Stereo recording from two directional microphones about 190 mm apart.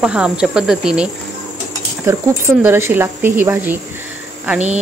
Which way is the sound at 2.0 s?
10° right (ahead or behind).